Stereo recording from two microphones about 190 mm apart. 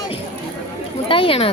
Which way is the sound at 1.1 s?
30° left (ahead or behind).